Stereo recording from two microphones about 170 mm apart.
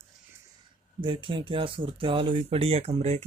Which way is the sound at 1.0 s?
30° right (ahead or behind).